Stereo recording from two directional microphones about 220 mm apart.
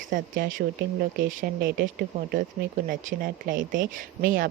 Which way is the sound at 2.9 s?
40° right (ahead or behind).